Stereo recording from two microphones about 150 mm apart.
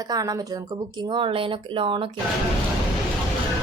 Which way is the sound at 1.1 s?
35° right (ahead or behind).